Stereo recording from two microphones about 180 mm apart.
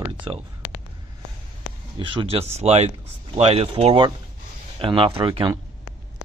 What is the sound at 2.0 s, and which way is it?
Speech, 25° right (ahead or behind).